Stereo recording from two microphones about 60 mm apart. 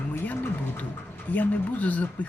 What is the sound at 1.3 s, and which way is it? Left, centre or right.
Speech, left.